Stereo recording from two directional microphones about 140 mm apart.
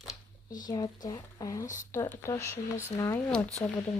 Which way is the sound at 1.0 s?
25° left (ahead or behind).